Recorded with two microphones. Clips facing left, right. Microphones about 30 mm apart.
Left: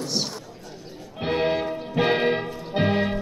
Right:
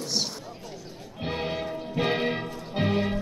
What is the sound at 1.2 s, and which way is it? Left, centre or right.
Music, left.